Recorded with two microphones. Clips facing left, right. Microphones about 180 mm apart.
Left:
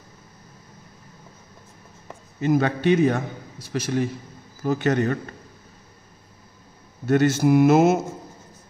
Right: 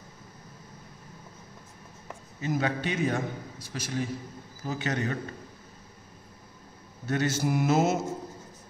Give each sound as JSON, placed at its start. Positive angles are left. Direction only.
{"t": 2.4, "sound": "mantra", "side_deg": 65}
{"t": 7.1, "sound": "mantra", "side_deg": 60}